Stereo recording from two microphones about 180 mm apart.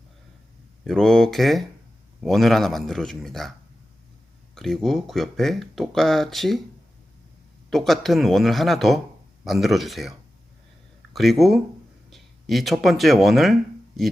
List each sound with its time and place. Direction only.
0.9 s speech: centre (ahead or behind)
4.5 s speech: centre (ahead or behind)
7.7 s speech: centre (ahead or behind)